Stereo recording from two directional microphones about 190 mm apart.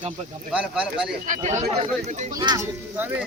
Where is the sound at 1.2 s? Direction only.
40° right (ahead or behind).